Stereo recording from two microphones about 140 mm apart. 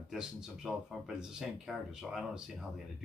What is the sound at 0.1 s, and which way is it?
Speech, 5° right (ahead or behind).